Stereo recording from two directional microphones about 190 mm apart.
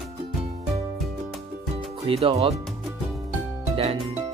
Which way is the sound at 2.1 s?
30° right (ahead or behind).